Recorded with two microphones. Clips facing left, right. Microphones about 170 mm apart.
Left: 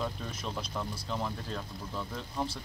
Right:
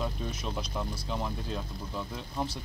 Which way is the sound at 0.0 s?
10° right (ahead or behind).